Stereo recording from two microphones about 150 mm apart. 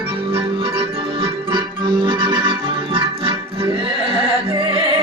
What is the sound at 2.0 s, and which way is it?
Music, 35° right (ahead or behind).